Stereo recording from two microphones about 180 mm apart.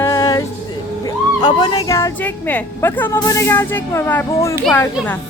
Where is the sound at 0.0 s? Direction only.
20° left (ahead or behind).